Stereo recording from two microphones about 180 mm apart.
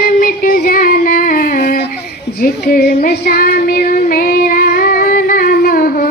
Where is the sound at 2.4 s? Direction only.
60° left (ahead or behind).